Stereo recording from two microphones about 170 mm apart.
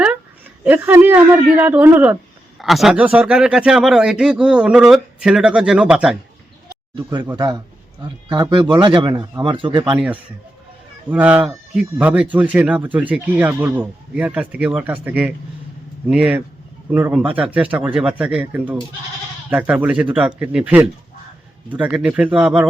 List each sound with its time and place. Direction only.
0.6 s speech: 10° right (ahead or behind)
2.6 s a man's voice: centre (ahead or behind)
6.9 s a man's voice: 25° right (ahead or behind)
11.1 s speech: 10° right (ahead or behind)